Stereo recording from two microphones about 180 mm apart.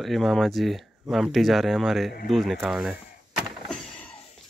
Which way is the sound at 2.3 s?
Centre (ahead or behind).